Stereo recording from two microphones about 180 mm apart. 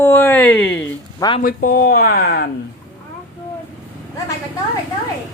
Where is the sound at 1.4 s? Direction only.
50° left (ahead or behind).